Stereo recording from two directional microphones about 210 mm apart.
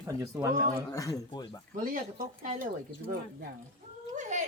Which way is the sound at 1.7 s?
40° right (ahead or behind).